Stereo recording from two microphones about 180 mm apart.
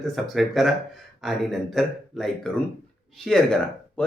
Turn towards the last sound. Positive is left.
turn(degrees=5)  # may be behind; listen again after turning